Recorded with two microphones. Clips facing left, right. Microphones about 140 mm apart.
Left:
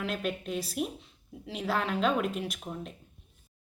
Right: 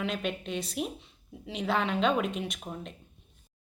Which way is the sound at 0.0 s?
5° left (ahead or behind).